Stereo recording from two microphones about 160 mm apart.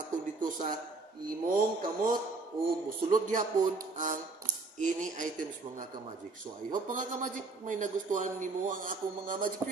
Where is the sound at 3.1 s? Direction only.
55° right (ahead or behind).